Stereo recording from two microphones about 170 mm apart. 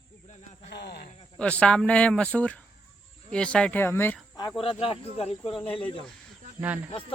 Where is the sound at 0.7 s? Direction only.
75° left (ahead or behind).